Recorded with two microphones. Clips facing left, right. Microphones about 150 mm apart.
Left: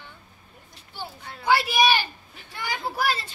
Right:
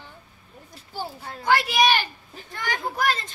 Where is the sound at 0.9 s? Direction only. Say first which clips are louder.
Right 5 dB; 40° right (ahead or behind).